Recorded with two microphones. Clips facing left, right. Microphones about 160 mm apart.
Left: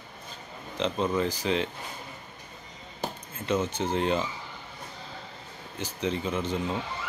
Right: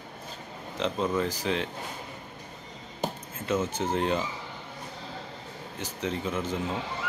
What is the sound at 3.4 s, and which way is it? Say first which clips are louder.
Speech: even; 5° right (ahead or behind).